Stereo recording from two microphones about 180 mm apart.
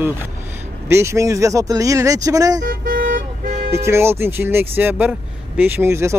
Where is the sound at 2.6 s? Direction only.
55° right (ahead or behind).